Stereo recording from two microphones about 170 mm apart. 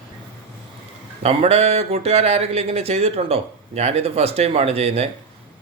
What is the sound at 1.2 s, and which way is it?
Speech, 40° right (ahead or behind).